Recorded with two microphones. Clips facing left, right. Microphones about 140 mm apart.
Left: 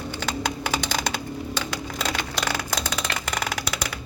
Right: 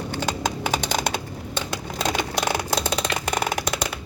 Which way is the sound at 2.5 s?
25° right (ahead or behind).